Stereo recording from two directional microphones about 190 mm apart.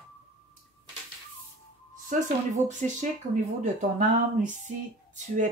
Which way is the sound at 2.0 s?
40° right (ahead or behind).